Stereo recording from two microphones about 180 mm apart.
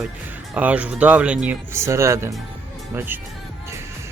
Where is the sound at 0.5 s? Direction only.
10° right (ahead or behind).